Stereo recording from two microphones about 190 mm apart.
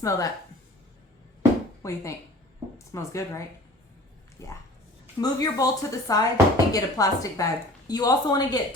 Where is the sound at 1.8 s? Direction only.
15° left (ahead or behind).